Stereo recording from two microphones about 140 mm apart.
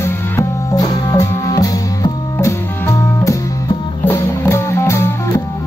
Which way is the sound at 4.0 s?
15° left (ahead or behind).